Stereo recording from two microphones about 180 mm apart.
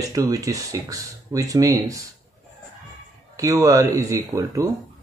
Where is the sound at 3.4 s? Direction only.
20° right (ahead or behind).